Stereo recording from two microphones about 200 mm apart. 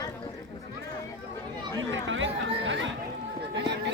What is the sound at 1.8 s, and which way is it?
Chatter, 70° right (ahead or behind).